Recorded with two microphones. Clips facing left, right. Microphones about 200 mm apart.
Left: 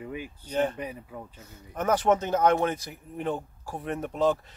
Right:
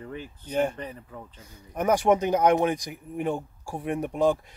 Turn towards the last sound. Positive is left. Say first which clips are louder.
# right 2 dB
turn(degrees=-10)  # may be behind; listen again after turning